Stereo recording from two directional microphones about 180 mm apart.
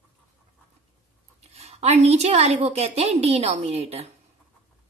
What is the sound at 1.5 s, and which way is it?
A woman's voice, 35° right (ahead or behind).